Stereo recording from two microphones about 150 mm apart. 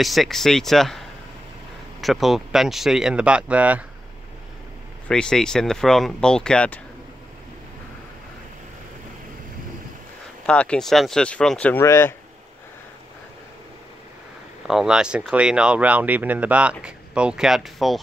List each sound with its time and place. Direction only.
0.0 s speech: centre (ahead or behind)
5.0 s speech: 5° left (ahead or behind)
10.4 s speech: 5° left (ahead or behind)
11.8 s speech: 15° left (ahead or behind)
14.7 s speech: 5° right (ahead or behind)